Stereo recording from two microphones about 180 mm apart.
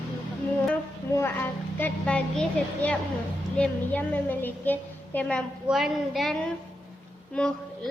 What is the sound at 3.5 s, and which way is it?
A woman's voice, 10° left (ahead or behind).